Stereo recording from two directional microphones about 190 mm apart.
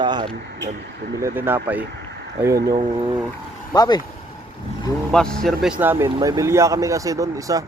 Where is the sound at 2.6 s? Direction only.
55° right (ahead or behind).